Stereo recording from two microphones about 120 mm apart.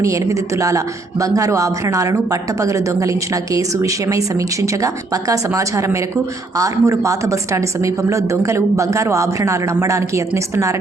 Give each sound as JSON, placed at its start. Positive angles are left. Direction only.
{"t": 0.0, "sound": "a woman's voice", "side_deg": -25}